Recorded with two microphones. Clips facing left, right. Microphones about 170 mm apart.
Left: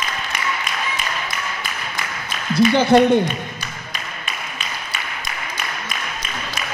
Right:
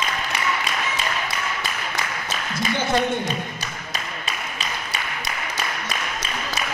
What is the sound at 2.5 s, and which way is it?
Speech, 70° left (ahead or behind).